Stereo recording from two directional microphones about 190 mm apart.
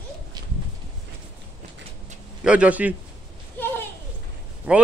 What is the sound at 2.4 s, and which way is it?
Speech, 5° right (ahead or behind).